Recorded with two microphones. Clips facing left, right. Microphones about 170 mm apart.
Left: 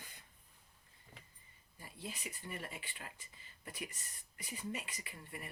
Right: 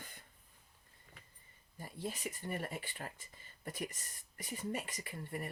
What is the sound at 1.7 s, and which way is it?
Speech, 45° right (ahead or behind).